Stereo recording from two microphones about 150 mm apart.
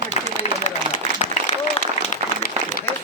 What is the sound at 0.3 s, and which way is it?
Applause, 50° left (ahead or behind).